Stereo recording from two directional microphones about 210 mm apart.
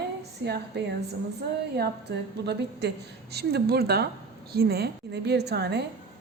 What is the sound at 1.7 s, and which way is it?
A woman's voice, 50° right (ahead or behind).